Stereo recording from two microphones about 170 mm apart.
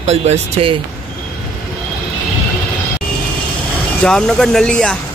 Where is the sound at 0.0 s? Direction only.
40° right (ahead or behind).